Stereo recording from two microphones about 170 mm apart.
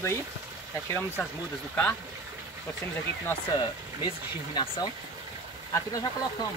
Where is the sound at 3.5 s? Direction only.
25° left (ahead or behind).